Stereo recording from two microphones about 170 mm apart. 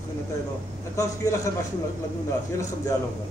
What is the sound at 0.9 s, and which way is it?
Speech, 20° left (ahead or behind).